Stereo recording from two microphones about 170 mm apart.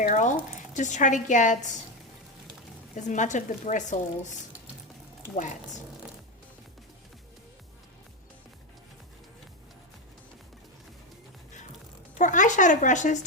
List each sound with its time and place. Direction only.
0.0 s speech: 45° left (ahead or behind)
2.9 s speech: 45° left (ahead or behind)
12.1 s speech: 45° left (ahead or behind)